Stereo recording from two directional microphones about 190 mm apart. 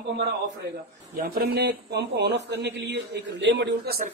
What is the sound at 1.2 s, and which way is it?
Speech, 55° right (ahead or behind).